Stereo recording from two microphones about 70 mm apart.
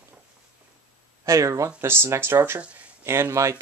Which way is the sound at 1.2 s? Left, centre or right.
Right.